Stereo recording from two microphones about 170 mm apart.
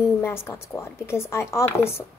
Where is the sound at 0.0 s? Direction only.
15° left (ahead or behind).